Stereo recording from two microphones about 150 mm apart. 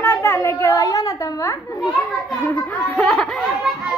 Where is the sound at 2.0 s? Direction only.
10° left (ahead or behind).